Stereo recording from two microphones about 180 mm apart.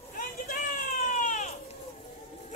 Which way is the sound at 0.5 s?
50° left (ahead or behind).